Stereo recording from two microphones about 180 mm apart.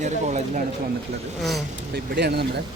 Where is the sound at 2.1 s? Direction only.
65° right (ahead or behind).